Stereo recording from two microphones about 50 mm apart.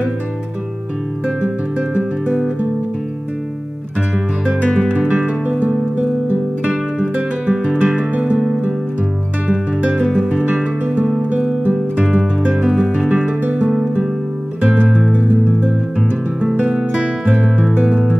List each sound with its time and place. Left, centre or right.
1.2 s music: right
4.8 s music: right
9.8 s music: right
10.0 s music: centre
12.0 s music: centre
13.1 s music: right
14.6 s music: centre
15.1 s music: right
17.8 s music: right